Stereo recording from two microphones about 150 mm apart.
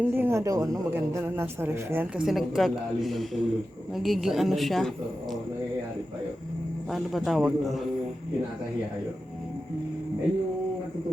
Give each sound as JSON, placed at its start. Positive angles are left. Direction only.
{"t": 0.0, "sound": "a man's voice", "side_deg": -15}
{"t": 2.2, "sound": "a woman's voice", "side_deg": 0}
{"t": 6.9, "sound": "a woman's voice", "side_deg": 0}